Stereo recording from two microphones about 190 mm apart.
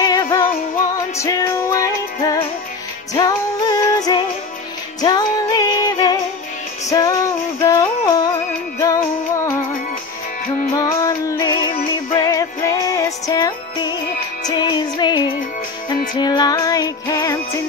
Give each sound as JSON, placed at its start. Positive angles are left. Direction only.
{"t": 0.0, "sound": "music", "side_deg": 20}
{"t": 3.2, "sound": "music", "side_deg": 20}
{"t": 11.0, "sound": "music", "side_deg": 15}
{"t": 12.4, "sound": "music", "side_deg": 15}